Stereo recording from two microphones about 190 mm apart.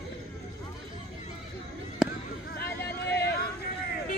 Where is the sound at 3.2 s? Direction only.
55° left (ahead or behind).